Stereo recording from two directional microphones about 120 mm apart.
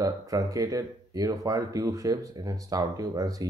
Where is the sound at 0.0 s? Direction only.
30° right (ahead or behind).